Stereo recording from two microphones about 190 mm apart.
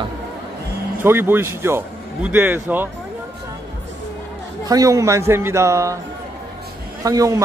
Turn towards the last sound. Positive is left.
turn(degrees=-20)  # may be behind; listen again after turning